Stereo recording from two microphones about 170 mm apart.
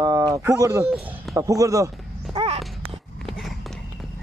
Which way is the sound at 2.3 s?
35° right (ahead or behind).